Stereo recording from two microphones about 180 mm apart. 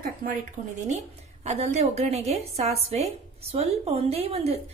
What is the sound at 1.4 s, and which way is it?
Speech, 40° right (ahead or behind).